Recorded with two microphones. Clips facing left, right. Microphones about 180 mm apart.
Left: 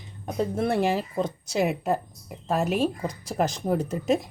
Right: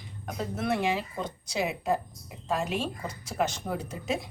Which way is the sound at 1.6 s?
50° left (ahead or behind).